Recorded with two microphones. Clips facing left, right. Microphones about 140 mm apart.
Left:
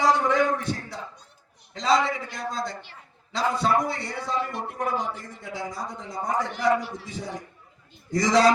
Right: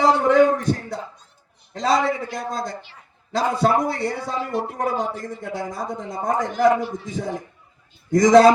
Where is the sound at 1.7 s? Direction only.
50° right (ahead or behind).